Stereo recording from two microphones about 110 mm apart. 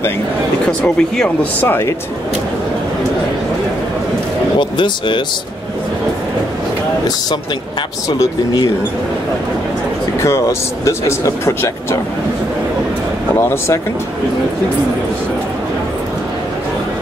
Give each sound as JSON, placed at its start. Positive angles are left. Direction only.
{"t": 0.7, "sound": "speech", "side_deg": 5}
{"t": 1.6, "sound": "speech", "side_deg": 20}
{"t": 4.6, "sound": "speech", "side_deg": 45}
{"t": 8.1, "sound": "speech", "side_deg": 40}
{"t": 10.2, "sound": "speech", "side_deg": 25}
{"t": 13.4, "sound": "speech", "side_deg": 25}